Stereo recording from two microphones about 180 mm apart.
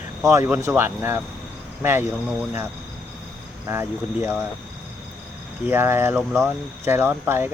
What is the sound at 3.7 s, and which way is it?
Speech, 10° right (ahead or behind).